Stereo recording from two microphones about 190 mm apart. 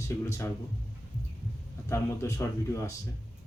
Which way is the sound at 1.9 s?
15° left (ahead or behind).